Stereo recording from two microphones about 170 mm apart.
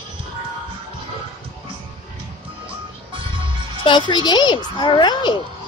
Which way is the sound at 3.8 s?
25° left (ahead or behind).